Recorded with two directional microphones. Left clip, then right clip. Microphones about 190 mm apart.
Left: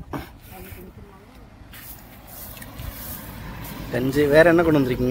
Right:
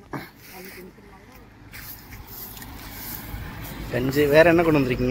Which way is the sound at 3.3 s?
70° left (ahead or behind).